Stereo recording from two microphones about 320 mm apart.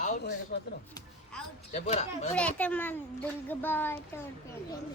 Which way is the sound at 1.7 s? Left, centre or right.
Left.